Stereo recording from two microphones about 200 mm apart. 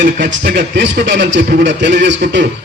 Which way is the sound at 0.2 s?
60° right (ahead or behind).